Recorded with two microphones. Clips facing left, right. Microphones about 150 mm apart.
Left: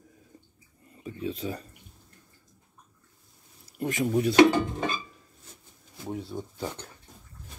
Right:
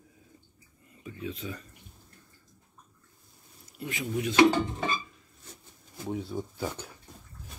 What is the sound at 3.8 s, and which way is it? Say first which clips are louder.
Speech: left 7 dB; 45° left (ahead or behind).